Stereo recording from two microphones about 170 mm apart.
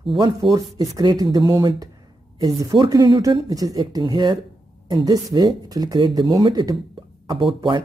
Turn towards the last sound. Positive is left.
turn(degrees=-30)  # may be behind; listen again after turning